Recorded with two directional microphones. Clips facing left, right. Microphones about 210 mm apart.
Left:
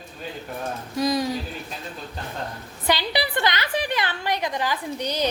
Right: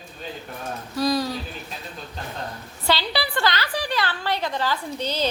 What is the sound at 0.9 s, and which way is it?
Speech, 20° left (ahead or behind).